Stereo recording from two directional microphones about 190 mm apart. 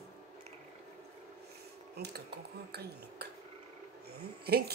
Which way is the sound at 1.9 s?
55° right (ahead or behind).